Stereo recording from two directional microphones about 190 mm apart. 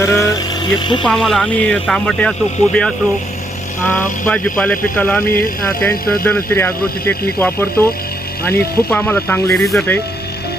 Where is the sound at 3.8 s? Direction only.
10° left (ahead or behind).